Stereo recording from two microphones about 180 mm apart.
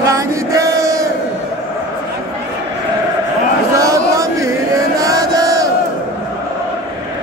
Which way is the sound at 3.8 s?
20° right (ahead or behind).